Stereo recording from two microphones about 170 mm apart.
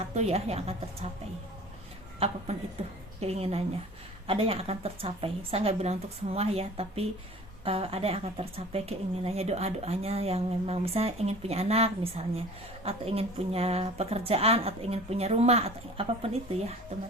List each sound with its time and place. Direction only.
0.1 s a woman's voice: 40° right (ahead or behind)
2.1 s a woman's voice: 40° right (ahead or behind)